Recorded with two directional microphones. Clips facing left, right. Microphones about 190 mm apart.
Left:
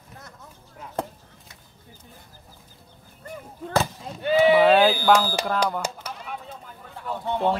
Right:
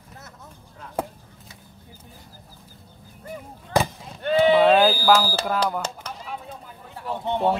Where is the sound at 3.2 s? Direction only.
15° right (ahead or behind).